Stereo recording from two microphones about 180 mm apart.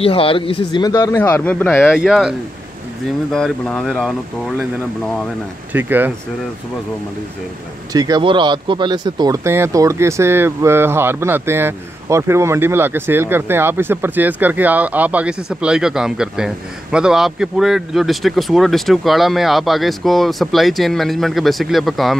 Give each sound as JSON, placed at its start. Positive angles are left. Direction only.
{"t": 0.0, "sound": "speech", "side_deg": 30}
{"t": 2.0, "sound": "speech", "side_deg": -5}
{"t": 5.7, "sound": "speech", "side_deg": -10}
{"t": 7.9, "sound": "speech", "side_deg": -20}